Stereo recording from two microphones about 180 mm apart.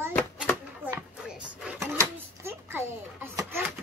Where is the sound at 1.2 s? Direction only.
5° right (ahead or behind).